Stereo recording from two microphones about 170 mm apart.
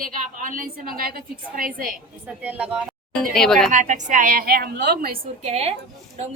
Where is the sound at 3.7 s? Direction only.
45° right (ahead or behind); by 5.2 s 65° right (ahead or behind).